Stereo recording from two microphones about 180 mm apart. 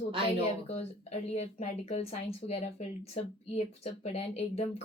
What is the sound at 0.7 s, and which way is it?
A woman's voice, 35° left (ahead or behind).